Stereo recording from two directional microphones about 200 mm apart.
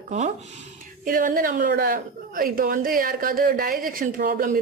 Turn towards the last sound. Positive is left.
turn(degrees=-45)  # may be behind; listen again after turning